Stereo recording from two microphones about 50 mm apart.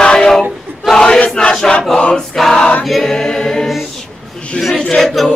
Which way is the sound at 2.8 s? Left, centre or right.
Centre.